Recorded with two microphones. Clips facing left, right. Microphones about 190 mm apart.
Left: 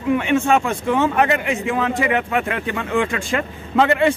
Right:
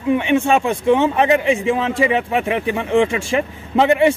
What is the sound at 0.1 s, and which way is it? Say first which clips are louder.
Speech: right 1 dB; 20° right (ahead or behind).